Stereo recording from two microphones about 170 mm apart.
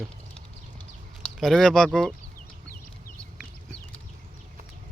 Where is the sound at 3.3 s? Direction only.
5° left (ahead or behind).